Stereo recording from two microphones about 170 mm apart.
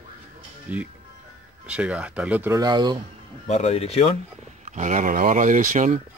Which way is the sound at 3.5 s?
40° left (ahead or behind).